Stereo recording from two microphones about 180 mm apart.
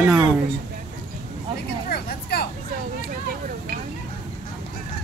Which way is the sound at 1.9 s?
60° left (ahead or behind).